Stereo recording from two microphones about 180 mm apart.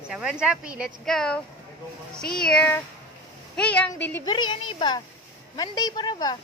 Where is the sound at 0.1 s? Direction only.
5° right (ahead or behind).